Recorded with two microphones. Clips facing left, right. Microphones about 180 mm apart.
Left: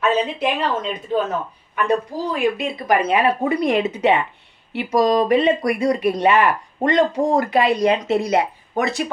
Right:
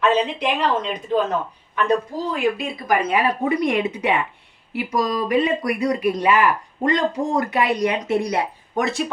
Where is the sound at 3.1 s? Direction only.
30° left (ahead or behind).